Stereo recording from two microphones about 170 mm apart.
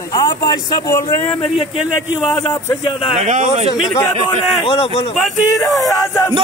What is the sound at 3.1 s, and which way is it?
Speech, 40° right (ahead or behind).